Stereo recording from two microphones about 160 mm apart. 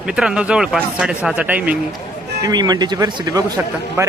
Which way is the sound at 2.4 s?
25° right (ahead or behind).